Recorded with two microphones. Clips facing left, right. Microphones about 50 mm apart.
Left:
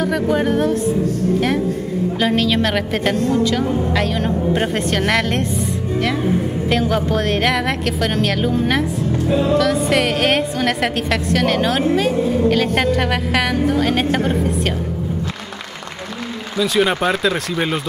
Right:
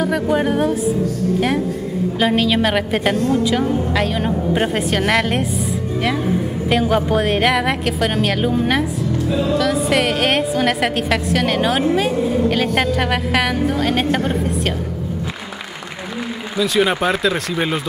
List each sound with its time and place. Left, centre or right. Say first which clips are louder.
0.0 s a woman's voice: even; centre
2.1 s a woman's voice: right 1 dB; centre
16.5 s a woman's voice: even; centre